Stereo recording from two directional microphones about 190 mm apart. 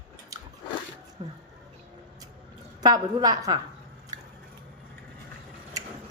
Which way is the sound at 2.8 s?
20° right (ahead or behind).